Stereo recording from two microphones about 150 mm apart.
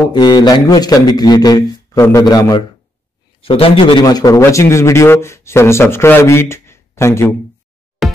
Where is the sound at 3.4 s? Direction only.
40° left (ahead or behind); by 7.3 s 15° left (ahead or behind).